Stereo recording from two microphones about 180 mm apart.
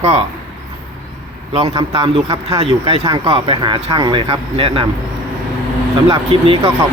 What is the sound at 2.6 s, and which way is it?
Speech, 30° right (ahead or behind).